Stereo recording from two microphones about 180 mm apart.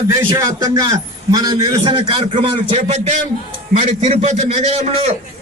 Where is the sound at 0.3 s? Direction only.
20° right (ahead or behind).